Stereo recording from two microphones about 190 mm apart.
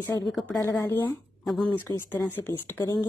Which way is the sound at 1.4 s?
Centre (ahead or behind).